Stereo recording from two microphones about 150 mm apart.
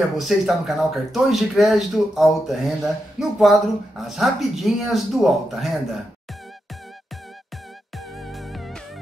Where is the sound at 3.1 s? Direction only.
Centre (ahead or behind).